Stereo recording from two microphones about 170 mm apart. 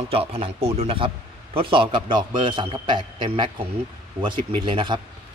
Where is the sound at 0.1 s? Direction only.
35° right (ahead or behind).